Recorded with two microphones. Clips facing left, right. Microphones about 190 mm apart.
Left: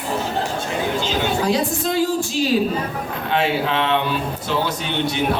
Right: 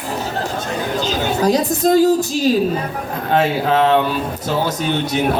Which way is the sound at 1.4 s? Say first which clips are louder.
Right 5 dB; 40° right (ahead or behind).